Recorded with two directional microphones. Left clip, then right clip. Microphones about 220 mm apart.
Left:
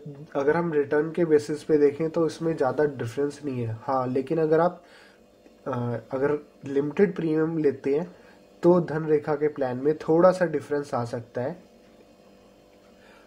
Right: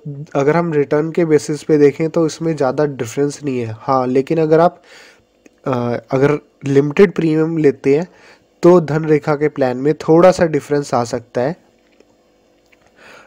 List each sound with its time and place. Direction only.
0.3 s speech: 35° right (ahead or behind)